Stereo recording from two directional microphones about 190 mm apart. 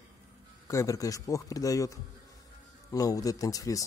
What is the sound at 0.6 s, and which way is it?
A man's voice, 15° left (ahead or behind).